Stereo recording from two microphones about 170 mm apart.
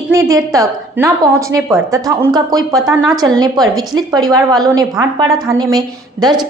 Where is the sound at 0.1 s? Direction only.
20° right (ahead or behind).